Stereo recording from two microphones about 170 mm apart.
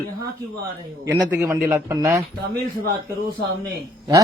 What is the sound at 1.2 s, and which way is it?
A man's voice, 15° right (ahead or behind).